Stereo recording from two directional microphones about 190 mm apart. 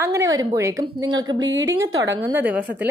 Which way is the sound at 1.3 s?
75° right (ahead or behind).